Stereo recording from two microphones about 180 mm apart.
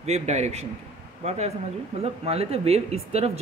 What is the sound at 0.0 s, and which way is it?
A man's voice, 40° right (ahead or behind).